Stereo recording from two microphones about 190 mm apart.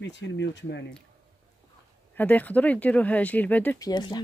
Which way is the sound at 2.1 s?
10° left (ahead or behind).